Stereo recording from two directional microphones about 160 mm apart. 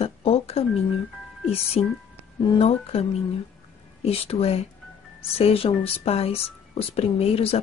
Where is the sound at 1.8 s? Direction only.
40° left (ahead or behind).